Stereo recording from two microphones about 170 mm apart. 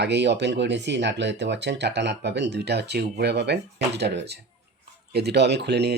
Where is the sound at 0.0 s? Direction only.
85° right.